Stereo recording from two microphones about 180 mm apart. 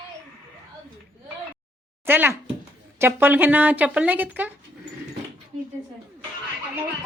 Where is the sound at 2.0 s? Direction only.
10° right (ahead or behind).